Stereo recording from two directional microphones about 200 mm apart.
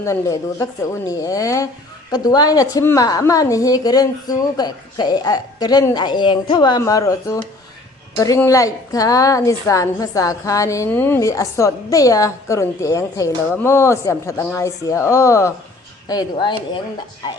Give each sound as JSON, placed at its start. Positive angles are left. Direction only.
{"t": 0.0, "sound": "a woman's voice", "side_deg": 15}